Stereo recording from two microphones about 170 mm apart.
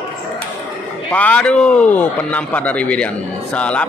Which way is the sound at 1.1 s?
10° left (ahead or behind).